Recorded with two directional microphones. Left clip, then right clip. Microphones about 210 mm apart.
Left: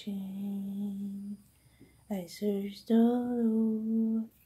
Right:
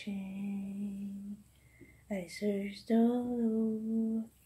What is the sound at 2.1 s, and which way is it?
Speech, 25° left (ahead or behind).